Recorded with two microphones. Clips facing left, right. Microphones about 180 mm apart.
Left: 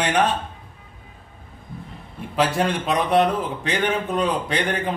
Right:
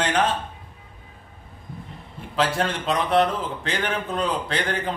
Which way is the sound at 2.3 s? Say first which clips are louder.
Left 2 dB; 15° left (ahead or behind).